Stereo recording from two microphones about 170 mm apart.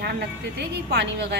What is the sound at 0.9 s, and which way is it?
Speech, 75° right (ahead or behind).